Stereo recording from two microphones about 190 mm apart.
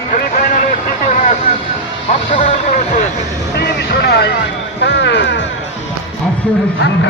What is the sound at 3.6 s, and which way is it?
Speech, 60° left (ahead or behind).